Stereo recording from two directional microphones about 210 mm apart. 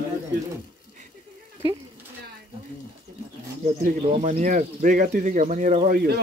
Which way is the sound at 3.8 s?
30° right (ahead or behind).